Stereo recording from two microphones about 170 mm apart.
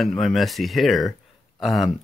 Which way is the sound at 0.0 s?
Centre (ahead or behind).